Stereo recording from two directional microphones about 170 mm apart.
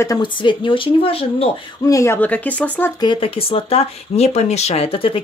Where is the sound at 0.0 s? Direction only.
25° left (ahead or behind).